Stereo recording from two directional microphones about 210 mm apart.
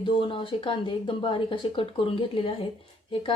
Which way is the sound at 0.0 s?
25° left (ahead or behind).